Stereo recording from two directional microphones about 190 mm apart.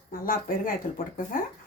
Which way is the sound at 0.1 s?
50° left (ahead or behind).